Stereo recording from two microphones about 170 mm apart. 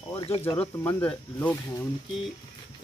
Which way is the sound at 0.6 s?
10° left (ahead or behind).